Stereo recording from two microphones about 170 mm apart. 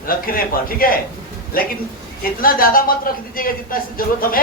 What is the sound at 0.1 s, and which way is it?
Speech, 55° left (ahead or behind).